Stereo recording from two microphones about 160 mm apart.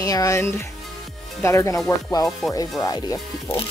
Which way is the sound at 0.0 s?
20° left (ahead or behind).